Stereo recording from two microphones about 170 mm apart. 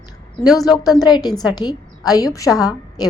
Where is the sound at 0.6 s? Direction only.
25° left (ahead or behind).